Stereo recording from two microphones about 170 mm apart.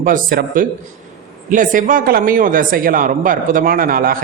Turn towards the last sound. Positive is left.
turn(degrees=-60)  # may be behind; listen again after turning